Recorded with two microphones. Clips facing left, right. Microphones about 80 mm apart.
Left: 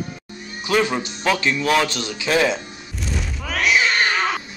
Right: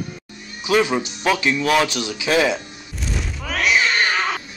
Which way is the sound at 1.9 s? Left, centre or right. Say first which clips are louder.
Right 1 dB; centre.